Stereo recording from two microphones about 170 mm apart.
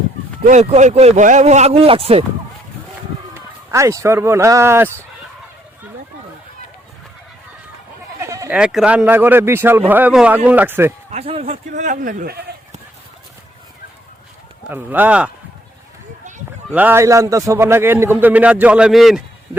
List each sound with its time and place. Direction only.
0.4 s speech: 40° right (ahead or behind)
3.3 s speech: 15° right (ahead or behind)
8.2 s bleat: 20° right (ahead or behind)
8.4 s a man's voice: 5° right (ahead or behind)
11.1 s speech: 40° right (ahead or behind)
12.2 s speech: 65° right (ahead or behind)
14.7 s a man's voice: 10° right (ahead or behind)
16.7 s a man's voice: 10° right (ahead or behind)